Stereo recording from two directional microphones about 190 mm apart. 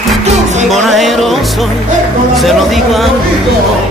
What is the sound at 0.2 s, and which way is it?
Music, 35° right (ahead or behind).